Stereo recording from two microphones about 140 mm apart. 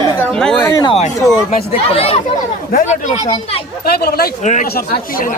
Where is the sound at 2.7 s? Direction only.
70° left (ahead or behind).